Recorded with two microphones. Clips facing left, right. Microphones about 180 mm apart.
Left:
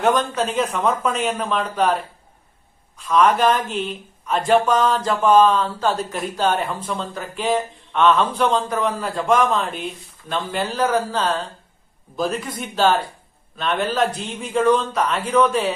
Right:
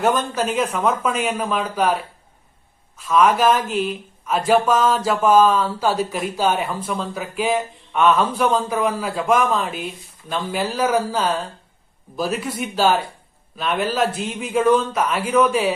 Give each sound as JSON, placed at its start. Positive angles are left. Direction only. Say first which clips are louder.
{"t": 0.0, "sound": "a man's voice", "louder": "left 1 dB", "side_deg": 0}